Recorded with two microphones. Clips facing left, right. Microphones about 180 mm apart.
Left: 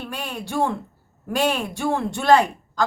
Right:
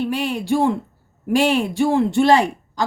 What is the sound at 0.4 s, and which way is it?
Speech, 15° right (ahead or behind).